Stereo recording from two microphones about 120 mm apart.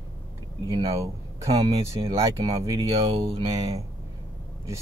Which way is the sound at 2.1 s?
25° right (ahead or behind).